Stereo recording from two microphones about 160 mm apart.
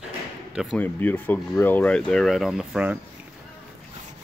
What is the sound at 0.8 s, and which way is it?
Speech, 10° left (ahead or behind).